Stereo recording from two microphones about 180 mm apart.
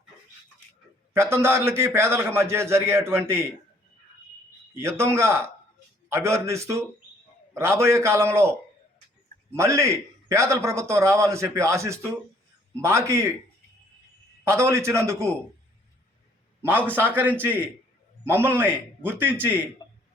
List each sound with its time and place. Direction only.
1.1 s a man's voice: 15° right (ahead or behind)
4.7 s a man's voice: 15° right (ahead or behind)
9.6 s a man's voice: 15° right (ahead or behind)
14.4 s a man's voice: 15° right (ahead or behind)
16.6 s a man's voice: 10° right (ahead or behind)